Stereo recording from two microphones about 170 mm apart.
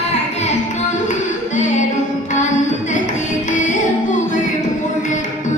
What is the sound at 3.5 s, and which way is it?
Music, 45° left (ahead or behind).